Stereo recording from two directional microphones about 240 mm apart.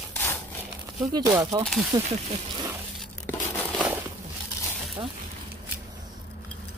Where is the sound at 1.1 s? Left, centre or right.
Centre.